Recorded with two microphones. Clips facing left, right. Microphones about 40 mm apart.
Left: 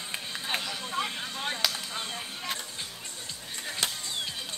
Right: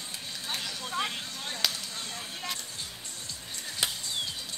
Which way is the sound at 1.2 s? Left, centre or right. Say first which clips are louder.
Left 4 dB; left.